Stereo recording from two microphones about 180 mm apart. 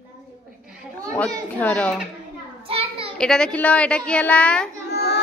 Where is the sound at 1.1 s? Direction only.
10° left (ahead or behind).